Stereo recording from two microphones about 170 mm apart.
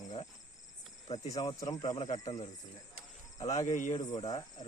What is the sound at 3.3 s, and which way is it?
Speech, 20° left (ahead or behind).